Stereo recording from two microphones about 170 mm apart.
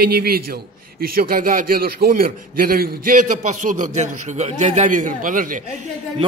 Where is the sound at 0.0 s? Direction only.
65° right (ahead or behind).